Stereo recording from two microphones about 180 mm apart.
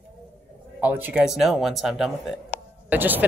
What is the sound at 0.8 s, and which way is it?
Speech, 10° right (ahead or behind).